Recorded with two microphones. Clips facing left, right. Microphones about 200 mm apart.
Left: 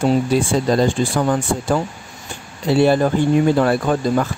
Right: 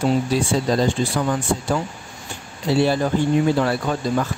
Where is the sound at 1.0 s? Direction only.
50° left (ahead or behind).